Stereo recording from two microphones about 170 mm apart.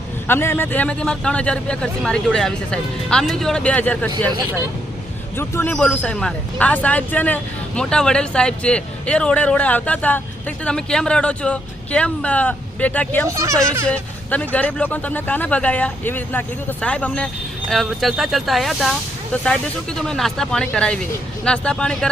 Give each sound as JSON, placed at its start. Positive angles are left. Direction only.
{"t": 0.3, "sound": "speech", "side_deg": 15}
{"t": 5.4, "sound": "speech", "side_deg": 15}
{"t": 13.2, "sound": "speech", "side_deg": -20}
{"t": 13.8, "sound": "speech", "side_deg": 10}